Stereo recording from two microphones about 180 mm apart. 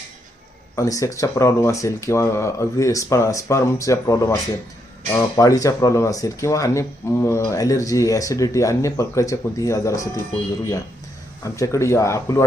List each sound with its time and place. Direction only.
0.8 s speech: 15° left (ahead or behind)
11.4 s speech: 15° left (ahead or behind)